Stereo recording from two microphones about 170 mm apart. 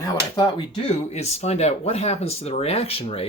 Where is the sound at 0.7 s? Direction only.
40° left (ahead or behind).